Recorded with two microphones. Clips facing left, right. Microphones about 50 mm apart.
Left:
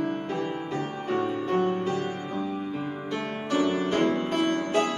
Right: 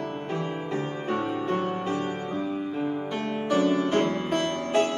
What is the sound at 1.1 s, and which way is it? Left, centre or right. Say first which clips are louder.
Music: left 1 dB; centre.